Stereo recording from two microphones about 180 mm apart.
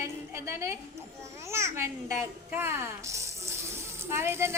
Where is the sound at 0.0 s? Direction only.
15° right (ahead or behind).